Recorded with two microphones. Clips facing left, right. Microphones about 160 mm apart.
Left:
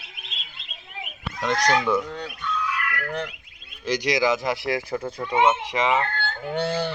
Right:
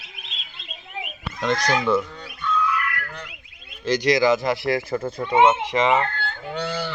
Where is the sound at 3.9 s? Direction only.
10° left (ahead or behind).